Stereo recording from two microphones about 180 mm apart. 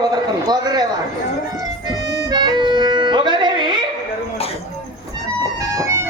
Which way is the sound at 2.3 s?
25° right (ahead or behind).